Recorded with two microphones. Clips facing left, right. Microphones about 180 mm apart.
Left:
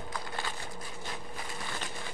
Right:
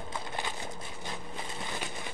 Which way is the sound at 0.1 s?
20° right (ahead or behind).